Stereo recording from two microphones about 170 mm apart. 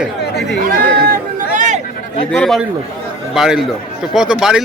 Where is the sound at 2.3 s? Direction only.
Centre (ahead or behind).